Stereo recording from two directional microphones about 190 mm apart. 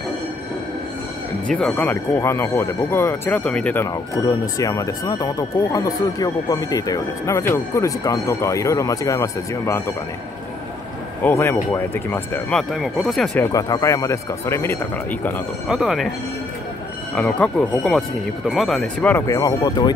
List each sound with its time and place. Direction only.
1.5 s speech: 5° left (ahead or behind)
11.2 s speech: 10° left (ahead or behind)
13.5 s speech: 15° left (ahead or behind)
15.7 s speech: centre (ahead or behind)
17.1 s speech: 5° left (ahead or behind)